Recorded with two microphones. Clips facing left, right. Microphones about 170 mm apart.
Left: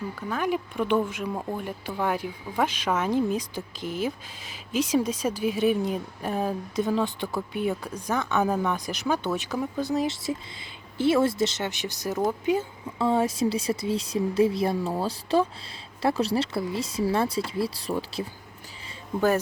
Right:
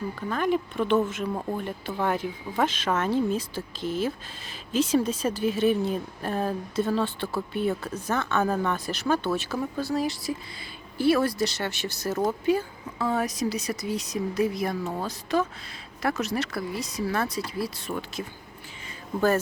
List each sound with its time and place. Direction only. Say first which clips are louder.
0.2 s speech: right 2 dB; 10° left (ahead or behind); by 18.3 s 30° left (ahead or behind)